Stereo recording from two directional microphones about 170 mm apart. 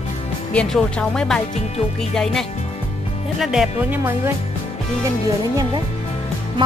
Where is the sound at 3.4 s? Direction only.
5° right (ahead or behind).